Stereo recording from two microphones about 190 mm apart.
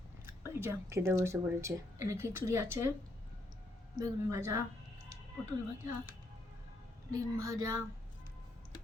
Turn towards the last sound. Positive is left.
turn(degrees=-15)  # may be behind; listen again after turning